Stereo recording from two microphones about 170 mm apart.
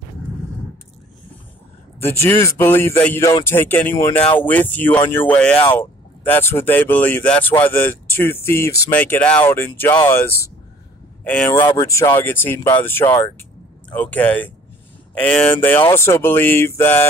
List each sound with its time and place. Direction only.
2.0 s speech: 15° left (ahead or behind)
11.2 s speech: 10° left (ahead or behind)
11.6 s speech: 20° left (ahead or behind)